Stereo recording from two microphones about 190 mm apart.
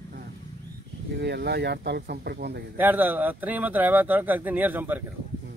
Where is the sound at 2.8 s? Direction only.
10° right (ahead or behind).